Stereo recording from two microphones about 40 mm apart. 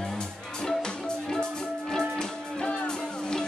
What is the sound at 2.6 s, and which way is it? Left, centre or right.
Music, centre.